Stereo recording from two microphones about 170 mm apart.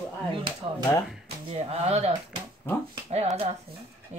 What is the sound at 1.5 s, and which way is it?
Speech, 35° right (ahead or behind).